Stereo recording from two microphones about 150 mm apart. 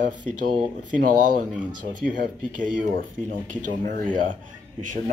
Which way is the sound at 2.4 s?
60° right (ahead or behind).